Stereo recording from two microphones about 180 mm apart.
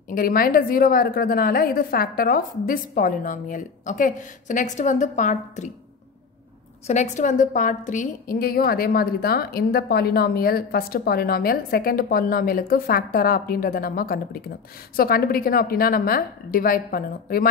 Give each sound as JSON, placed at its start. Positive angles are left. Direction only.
{"t": 0.1, "sound": "a woman's voice", "side_deg": 50}
{"t": 6.9, "sound": "a woman's voice", "side_deg": 40}